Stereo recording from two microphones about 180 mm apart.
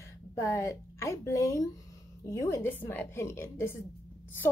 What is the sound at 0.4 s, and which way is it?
A woman's voice, 15° left (ahead or behind).